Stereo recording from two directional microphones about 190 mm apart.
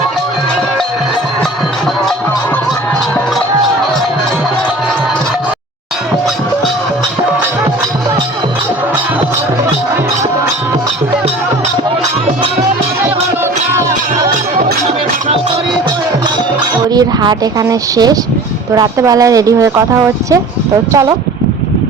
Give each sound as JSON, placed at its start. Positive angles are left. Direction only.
{"t": 16.9, "sound": "speech", "side_deg": -20}